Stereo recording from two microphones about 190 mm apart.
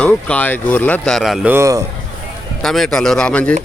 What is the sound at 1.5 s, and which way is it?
Speech, 15° right (ahead or behind).